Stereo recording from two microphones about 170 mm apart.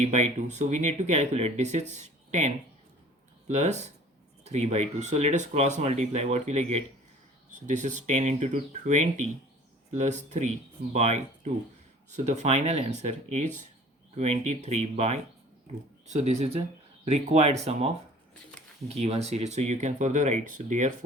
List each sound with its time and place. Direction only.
0.0 s speech: 45° right (ahead or behind)
18.9 s speech: 40° right (ahead or behind)